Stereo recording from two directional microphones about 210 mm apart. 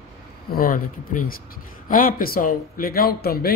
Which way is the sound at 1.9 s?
40° left (ahead or behind).